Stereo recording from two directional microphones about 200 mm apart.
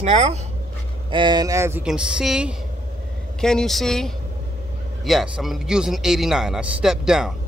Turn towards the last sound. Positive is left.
turn(degrees=-5)  # may be behind; listen again after turning